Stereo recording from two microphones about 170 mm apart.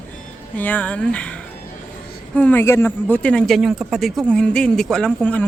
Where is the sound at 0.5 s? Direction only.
10° left (ahead or behind).